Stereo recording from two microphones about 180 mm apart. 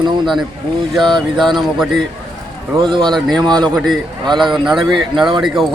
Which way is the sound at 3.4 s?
25° right (ahead or behind).